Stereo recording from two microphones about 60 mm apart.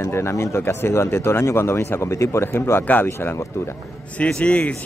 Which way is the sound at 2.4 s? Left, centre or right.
Left.